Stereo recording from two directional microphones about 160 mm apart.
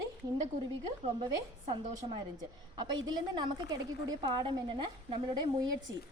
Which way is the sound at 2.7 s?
30° right (ahead or behind).